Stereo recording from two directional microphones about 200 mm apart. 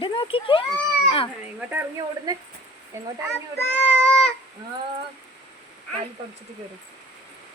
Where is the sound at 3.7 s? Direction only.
5° left (ahead or behind).